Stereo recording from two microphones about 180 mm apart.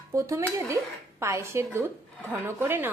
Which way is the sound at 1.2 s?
15° right (ahead or behind).